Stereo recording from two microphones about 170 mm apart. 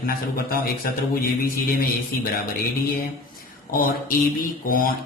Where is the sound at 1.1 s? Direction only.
60° left (ahead or behind).